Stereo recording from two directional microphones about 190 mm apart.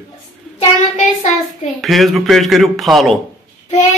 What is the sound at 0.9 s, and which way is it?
Child singing, 40° left (ahead or behind).